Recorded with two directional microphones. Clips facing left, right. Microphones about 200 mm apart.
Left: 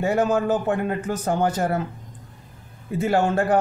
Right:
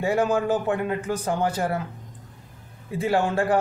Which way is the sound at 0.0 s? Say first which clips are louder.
Left 2 dB; 45° left (ahead or behind).